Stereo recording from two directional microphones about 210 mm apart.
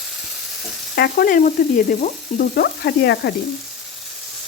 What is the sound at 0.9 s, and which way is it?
Frying, 45° left (ahead or behind).